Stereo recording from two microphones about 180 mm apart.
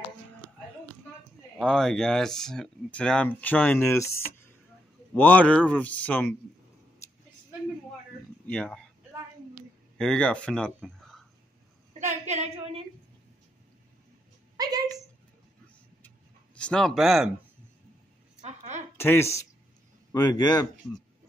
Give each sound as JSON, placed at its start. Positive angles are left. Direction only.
{"t": 1.6, "sound": "speech", "side_deg": 5}
{"t": 8.5, "sound": "speech", "side_deg": 5}
{"t": 9.9, "sound": "a man's voice", "side_deg": 5}
{"t": 12.0, "sound": "a woman's voice", "side_deg": -40}
{"t": 14.6, "sound": "a sound", "side_deg": -20}
{"t": 16.5, "sound": "speech", "side_deg": 5}
{"t": 18.4, "sound": "a sound", "side_deg": -40}
{"t": 18.9, "sound": "speech", "side_deg": 15}